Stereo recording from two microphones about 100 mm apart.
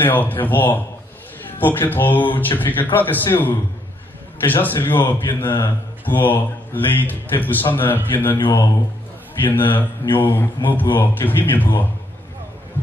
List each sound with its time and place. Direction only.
0.0 s speech: 20° left (ahead or behind)